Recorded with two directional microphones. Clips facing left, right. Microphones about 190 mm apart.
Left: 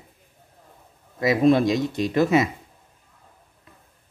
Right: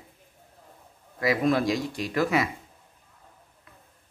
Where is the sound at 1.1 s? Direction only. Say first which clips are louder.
Left 6 dB; 25° left (ahead or behind).